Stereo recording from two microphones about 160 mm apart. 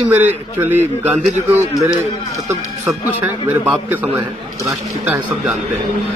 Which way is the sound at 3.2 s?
10° right (ahead or behind).